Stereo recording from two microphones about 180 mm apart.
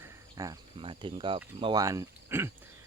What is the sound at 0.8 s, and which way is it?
Speech, 30° right (ahead or behind).